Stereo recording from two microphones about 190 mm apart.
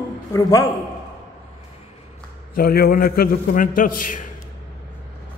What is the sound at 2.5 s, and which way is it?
A man's voice, 50° left (ahead or behind).